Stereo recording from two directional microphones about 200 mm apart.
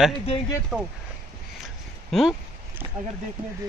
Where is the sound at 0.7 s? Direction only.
Centre (ahead or behind).